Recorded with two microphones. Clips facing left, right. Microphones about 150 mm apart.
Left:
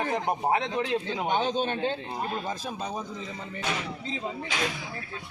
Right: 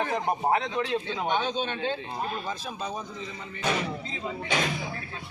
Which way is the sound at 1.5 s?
45° left (ahead or behind).